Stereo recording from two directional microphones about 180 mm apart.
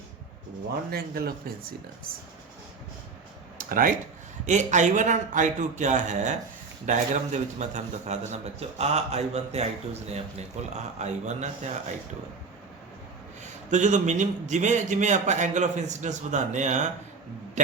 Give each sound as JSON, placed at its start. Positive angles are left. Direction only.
{"t": 0.9, "sound": "speech", "side_deg": -60}
{"t": 3.6, "sound": "a man's voice", "side_deg": -50}
{"t": 13.4, "sound": "a man's voice", "side_deg": -40}